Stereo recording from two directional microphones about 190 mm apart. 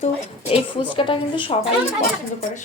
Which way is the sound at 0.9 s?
25° left (ahead or behind).